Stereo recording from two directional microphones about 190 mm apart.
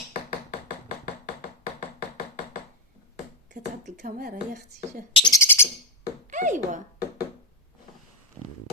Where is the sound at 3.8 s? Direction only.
45° right (ahead or behind).